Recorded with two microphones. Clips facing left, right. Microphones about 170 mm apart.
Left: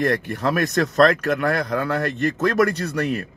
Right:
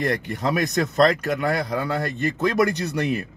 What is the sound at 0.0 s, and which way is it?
Speech, 15° right (ahead or behind).